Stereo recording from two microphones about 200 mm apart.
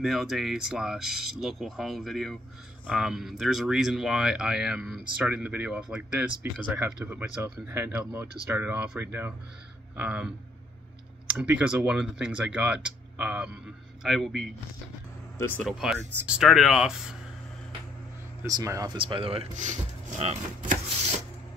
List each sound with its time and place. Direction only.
0.0 s speech: centre (ahead or behind)
11.3 s speech: 5° right (ahead or behind); by 15.7 s 10° left (ahead or behind)
15.8 s speech: 5° right (ahead or behind)
18.4 s speech: 15° right (ahead or behind); by 20.7 s 35° right (ahead or behind)